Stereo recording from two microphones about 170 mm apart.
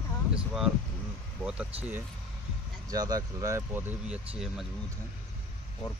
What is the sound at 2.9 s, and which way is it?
Speech, 20° right (ahead or behind).